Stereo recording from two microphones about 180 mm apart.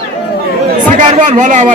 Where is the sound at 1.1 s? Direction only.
45° right (ahead or behind).